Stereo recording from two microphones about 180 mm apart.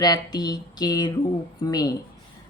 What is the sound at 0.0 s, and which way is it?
A woman's voice, 20° left (ahead or behind).